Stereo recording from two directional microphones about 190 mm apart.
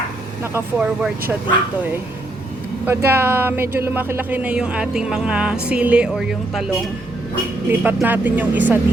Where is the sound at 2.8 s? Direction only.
10° right (ahead or behind).